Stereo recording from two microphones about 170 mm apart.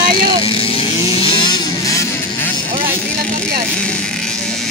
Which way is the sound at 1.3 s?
25° left (ahead or behind).